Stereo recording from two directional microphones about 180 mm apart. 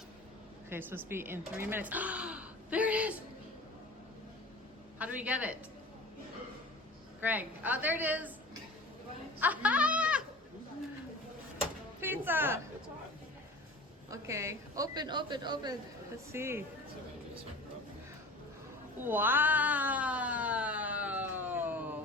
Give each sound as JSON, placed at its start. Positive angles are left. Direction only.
{"t": 0.7, "sound": "speech", "side_deg": -10}
{"t": 4.9, "sound": "speech", "side_deg": -5}
{"t": 7.2, "sound": "a woman's voice", "side_deg": -10}
{"t": 9.4, "sound": "goat", "side_deg": -10}
{"t": 11.9, "sound": "a sound", "side_deg": -10}
{"t": 14.1, "sound": "a woman's voice", "side_deg": -15}
{"t": 19.0, "sound": "cat", "side_deg": -10}